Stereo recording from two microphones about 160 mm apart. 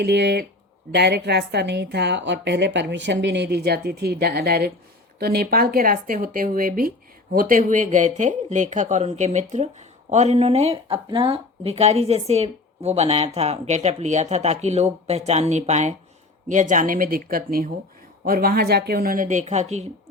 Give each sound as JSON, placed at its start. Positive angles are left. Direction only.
{"t": 0.0, "sound": "a woman's voice", "side_deg": -90}